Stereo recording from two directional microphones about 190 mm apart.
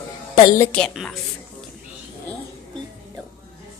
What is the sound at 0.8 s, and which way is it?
Speech, centre (ahead or behind).